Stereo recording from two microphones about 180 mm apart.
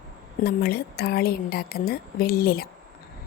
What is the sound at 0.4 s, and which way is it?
A woman's voice, 60° left (ahead or behind).